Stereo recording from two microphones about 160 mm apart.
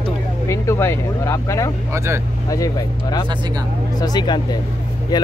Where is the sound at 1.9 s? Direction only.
15° right (ahead or behind).